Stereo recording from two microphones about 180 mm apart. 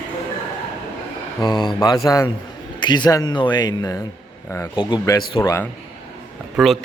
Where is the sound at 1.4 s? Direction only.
25° left (ahead or behind).